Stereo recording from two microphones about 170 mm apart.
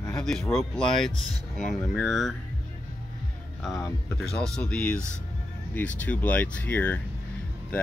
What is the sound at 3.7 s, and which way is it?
Speech, 20° left (ahead or behind).